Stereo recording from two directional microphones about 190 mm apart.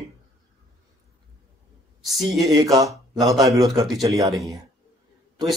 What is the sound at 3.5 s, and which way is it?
Speech, 15° right (ahead or behind).